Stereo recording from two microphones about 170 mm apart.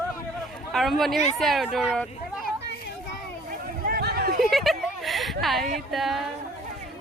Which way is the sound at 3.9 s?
70° right (ahead or behind).